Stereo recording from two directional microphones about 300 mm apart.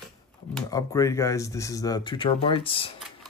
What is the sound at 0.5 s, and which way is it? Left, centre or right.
Speech, centre.